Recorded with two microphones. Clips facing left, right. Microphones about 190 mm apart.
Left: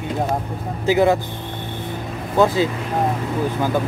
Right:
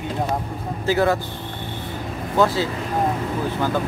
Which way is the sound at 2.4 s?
15° left (ahead or behind).